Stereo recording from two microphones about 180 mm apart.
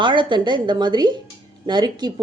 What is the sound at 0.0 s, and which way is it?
Speech, 25° right (ahead or behind).